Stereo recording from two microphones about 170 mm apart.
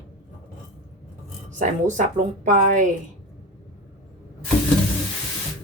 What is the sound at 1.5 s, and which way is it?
A woman's voice, 45° right (ahead or behind).